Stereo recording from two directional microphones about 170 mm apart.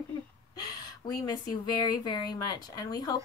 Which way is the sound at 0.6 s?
20° left (ahead or behind).